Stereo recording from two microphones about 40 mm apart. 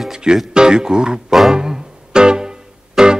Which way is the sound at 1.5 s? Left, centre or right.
Centre.